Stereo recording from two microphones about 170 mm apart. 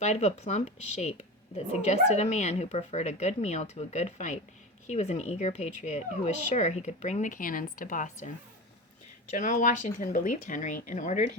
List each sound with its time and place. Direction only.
0.0 s a woman's voice: 40° left (ahead or behind)
9.3 s speech: 45° left (ahead or behind)